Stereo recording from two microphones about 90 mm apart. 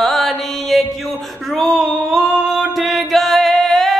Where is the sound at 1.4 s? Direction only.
Centre (ahead or behind).